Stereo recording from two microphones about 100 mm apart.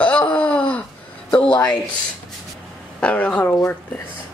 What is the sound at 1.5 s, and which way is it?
Speech, 40° left (ahead or behind).